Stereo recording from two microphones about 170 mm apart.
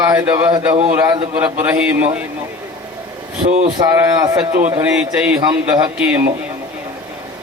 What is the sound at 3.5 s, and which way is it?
Speech, 40° right (ahead or behind).